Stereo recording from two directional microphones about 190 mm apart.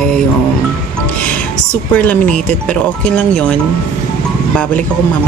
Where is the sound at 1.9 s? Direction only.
10° left (ahead or behind).